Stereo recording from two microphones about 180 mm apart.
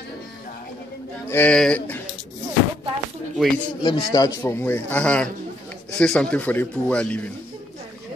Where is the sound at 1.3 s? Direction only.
10° left (ahead or behind).